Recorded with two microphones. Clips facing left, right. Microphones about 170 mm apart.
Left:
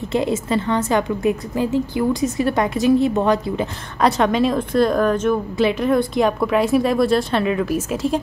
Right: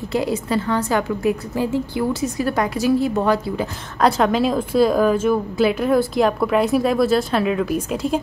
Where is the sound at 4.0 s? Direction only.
Centre (ahead or behind).